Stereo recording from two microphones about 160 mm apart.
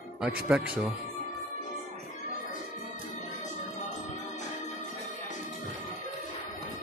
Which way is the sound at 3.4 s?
50° left (ahead or behind).